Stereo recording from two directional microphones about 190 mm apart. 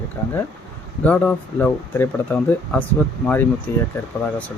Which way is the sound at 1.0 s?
10° left (ahead or behind).